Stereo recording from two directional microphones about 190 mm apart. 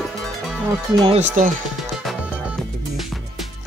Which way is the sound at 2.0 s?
Centre (ahead or behind).